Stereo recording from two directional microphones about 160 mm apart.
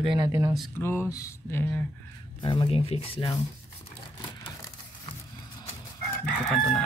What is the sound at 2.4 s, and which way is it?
Speech, 30° left (ahead or behind).